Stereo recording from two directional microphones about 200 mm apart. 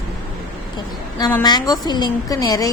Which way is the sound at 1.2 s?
10° left (ahead or behind).